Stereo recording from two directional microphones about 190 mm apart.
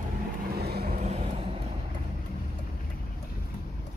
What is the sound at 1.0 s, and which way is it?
Vehicle, 35° right (ahead or behind).